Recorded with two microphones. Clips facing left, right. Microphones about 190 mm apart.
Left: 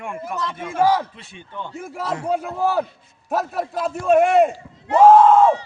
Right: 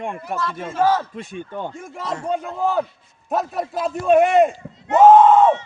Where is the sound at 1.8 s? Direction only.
5° left (ahead or behind).